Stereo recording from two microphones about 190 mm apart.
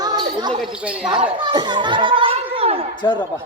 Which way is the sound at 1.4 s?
25° right (ahead or behind).